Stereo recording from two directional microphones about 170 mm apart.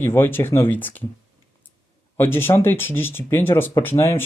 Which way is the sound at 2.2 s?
15° left (ahead or behind).